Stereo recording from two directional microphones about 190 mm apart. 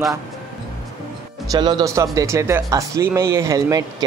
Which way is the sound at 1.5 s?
20° right (ahead or behind).